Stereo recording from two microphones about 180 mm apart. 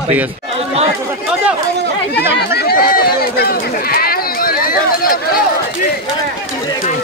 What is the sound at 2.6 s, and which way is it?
Run, 55° left (ahead or behind).